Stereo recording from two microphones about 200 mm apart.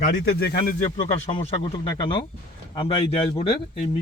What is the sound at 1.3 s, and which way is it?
Speech, 30° left (ahead or behind).